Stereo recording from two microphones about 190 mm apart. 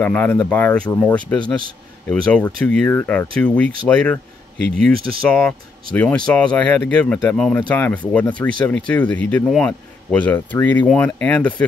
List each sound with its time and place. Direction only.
0.0 s speech: 10° left (ahead or behind)